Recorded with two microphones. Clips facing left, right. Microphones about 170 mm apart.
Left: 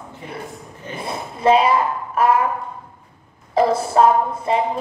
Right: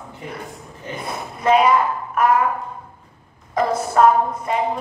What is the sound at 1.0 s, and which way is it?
Speech, 30° left (ahead or behind).